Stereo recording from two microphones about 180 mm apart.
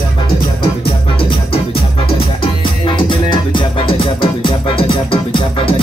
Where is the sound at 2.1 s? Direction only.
30° left (ahead or behind).